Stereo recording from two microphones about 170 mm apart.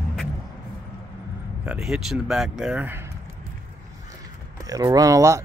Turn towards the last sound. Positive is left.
turn(degrees=-20)  # may be behind; listen again after turning